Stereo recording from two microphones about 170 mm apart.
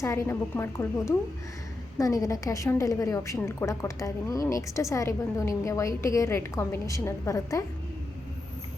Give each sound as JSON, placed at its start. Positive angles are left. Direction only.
{"t": 0.0, "sound": "a woman's voice", "side_deg": 15}